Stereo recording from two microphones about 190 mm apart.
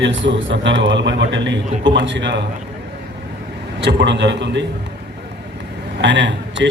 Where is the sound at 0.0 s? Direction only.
75° right (ahead or behind).